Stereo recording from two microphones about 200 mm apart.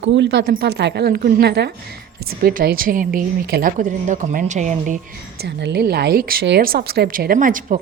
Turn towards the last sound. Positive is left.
turn(degrees=-40)  # may be behind; listen again after turning